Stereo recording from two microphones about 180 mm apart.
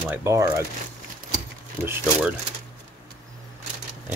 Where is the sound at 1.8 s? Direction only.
10° right (ahead or behind).